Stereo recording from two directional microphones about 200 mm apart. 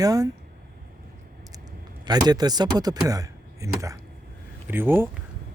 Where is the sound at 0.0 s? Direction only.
20° right (ahead or behind).